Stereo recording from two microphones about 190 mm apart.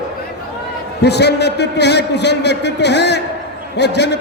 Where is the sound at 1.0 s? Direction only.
60° left (ahead or behind).